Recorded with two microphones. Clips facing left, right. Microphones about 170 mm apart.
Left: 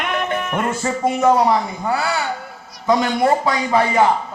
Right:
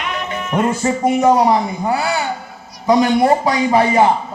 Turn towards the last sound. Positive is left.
turn(degrees=-25)  # may be behind; listen again after turning